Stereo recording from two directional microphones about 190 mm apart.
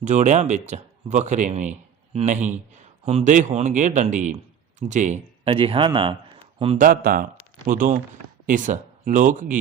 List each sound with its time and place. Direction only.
0.0 s a man's voice: 40° right (ahead or behind)
5.5 s speech: 30° right (ahead or behind)
6.7 s speech: 45° right (ahead or behind)